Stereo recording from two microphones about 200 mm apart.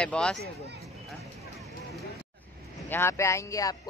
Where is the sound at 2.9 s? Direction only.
10° left (ahead or behind).